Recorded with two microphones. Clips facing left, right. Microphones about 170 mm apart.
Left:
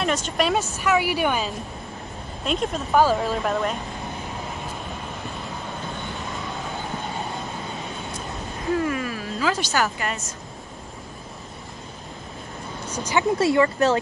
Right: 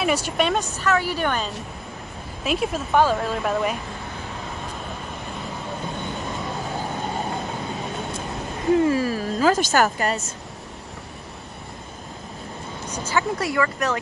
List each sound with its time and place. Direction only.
0.0 s vehicle: 10° right (ahead or behind)
0.4 s speech: 5° left (ahead or behind)
2.4 s speech: 5° right (ahead or behind)
8.8 s speech: 35° right (ahead or behind)
13.0 s speech: 20° left (ahead or behind)